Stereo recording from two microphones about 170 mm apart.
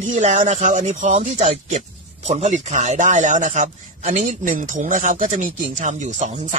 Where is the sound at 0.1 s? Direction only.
45° right (ahead or behind).